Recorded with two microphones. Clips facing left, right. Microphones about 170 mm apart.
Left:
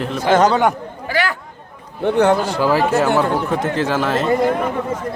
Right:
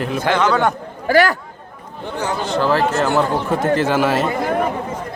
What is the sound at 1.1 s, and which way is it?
Speech, 45° right (ahead or behind).